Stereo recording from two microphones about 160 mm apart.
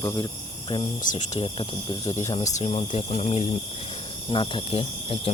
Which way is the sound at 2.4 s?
45° left (ahead or behind).